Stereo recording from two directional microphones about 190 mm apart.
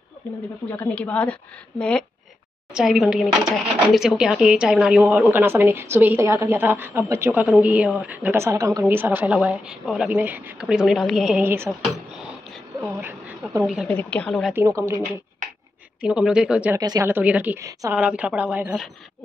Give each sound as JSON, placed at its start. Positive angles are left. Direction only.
{"t": 0.2, "sound": "a woman's voice", "side_deg": 10}
{"t": 11.8, "sound": "a sound", "side_deg": 0}
{"t": 12.9, "sound": "speech", "side_deg": -10}
{"t": 13.8, "sound": "speech", "side_deg": 5}
{"t": 14.5, "sound": "a woman's voice", "side_deg": -15}
{"t": 16.0, "sound": "speech", "side_deg": -5}
{"t": 16.8, "sound": "a woman's voice", "side_deg": -15}